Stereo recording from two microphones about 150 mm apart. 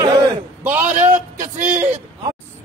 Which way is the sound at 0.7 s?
10° right (ahead or behind).